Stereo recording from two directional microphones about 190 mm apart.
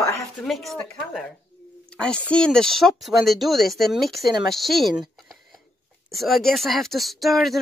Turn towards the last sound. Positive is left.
turn(degrees=0)  # may be behind; listen again after turning